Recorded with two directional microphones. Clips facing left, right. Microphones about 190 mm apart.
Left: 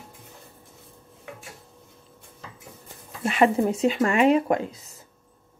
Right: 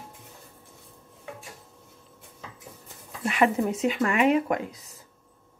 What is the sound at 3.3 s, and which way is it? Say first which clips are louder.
Speech: left 3 dB; 30° left (ahead or behind).